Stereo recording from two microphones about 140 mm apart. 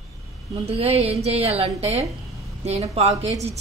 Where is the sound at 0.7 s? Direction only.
45° right (ahead or behind).